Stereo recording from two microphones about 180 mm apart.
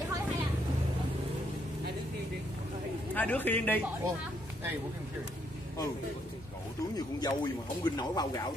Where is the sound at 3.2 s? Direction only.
10° left (ahead or behind).